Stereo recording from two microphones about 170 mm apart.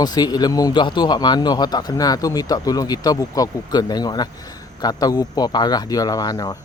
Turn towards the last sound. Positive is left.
turn(degrees=20)  # may be behind; listen again after turning